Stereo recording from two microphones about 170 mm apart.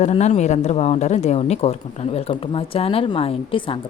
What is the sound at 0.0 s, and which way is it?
Speech, 40° left (ahead or behind).